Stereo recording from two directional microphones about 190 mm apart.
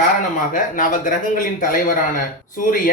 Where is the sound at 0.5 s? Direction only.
45° left (ahead or behind).